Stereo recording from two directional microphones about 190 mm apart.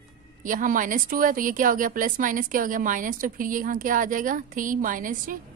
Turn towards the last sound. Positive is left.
turn(degrees=-45)  # may be behind; listen again after turning